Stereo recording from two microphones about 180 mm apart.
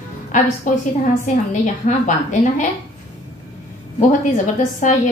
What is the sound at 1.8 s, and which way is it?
Speech, 40° left (ahead or behind).